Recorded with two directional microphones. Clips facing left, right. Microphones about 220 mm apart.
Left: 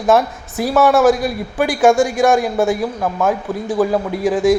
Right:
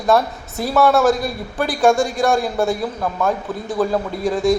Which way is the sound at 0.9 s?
Centre (ahead or behind).